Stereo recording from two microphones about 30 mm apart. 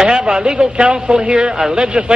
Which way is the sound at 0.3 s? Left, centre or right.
Right.